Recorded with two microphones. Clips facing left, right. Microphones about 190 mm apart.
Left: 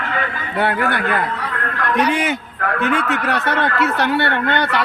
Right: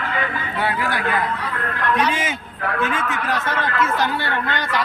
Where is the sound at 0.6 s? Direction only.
60° left (ahead or behind).